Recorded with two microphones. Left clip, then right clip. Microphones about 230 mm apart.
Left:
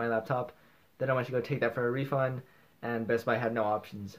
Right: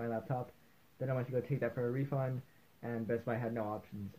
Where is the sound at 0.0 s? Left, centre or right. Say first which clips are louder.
Left 9 dB; centre.